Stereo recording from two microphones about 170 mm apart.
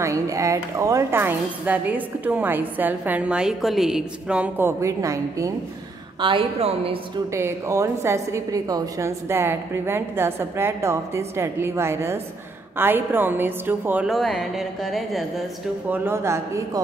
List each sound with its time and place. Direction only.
0.0 s a woman's voice: 20° right (ahead or behind)
6.2 s a woman's voice: 30° right (ahead or behind)
7.3 s a woman's voice: 15° right (ahead or behind); by 15.4 s centre (ahead or behind)
15.9 s a woman's voice: 15° right (ahead or behind)